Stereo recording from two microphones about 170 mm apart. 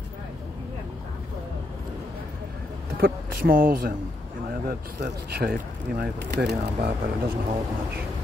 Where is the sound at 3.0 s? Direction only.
55° right (ahead or behind); by 6.9 s 75° right (ahead or behind).